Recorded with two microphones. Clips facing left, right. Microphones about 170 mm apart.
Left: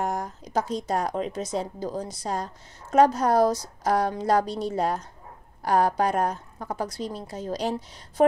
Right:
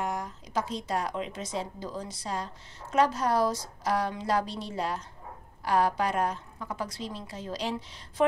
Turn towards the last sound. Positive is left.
turn(degrees=45)  # may be behind; listen again after turning